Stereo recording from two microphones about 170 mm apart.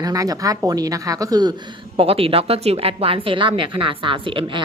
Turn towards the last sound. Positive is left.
turn(degrees=-30)  # may be behind; listen again after turning